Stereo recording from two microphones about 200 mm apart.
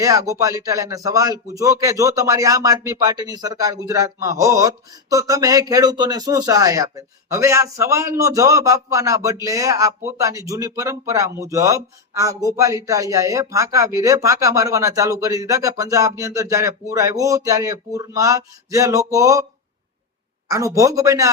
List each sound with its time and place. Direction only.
0.0 s a man's voice: 15° right (ahead or behind)
20.5 s a man's voice: 15° right (ahead or behind)